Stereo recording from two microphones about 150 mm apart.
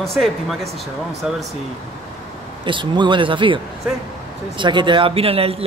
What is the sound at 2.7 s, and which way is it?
Speech, 30° right (ahead or behind).